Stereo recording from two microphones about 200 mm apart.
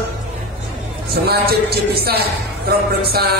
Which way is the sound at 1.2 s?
50° right (ahead or behind).